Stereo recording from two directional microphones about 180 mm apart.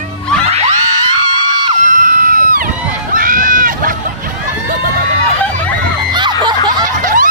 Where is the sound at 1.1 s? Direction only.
25° right (ahead or behind).